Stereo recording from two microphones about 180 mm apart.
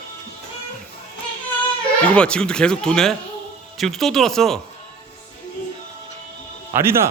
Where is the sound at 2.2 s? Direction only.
5° left (ahead or behind).